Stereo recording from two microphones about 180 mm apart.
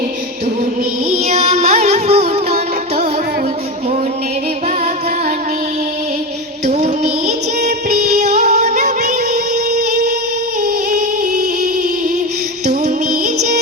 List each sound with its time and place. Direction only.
1.1 s music: 35° right (ahead or behind)
6.7 s female singing: 40° right (ahead or behind)
10.9 s singing: 40° right (ahead or behind)
11.6 s music: 40° right (ahead or behind)